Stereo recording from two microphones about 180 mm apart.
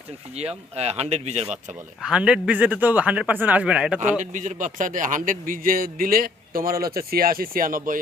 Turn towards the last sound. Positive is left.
turn(degrees=-50)  # may be behind; listen again after turning